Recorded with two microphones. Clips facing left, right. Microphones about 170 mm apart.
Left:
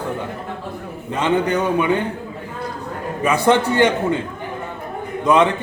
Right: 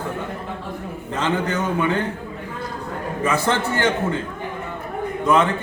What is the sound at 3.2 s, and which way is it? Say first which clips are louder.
Speech: left 6 dB; 15° left (ahead or behind).